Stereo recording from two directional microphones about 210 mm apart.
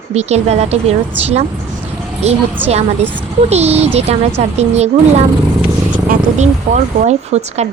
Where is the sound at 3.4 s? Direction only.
30° right (ahead or behind).